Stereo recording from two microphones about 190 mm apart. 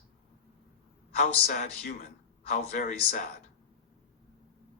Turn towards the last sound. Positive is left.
turn(degrees=40)  # may be behind; listen again after turning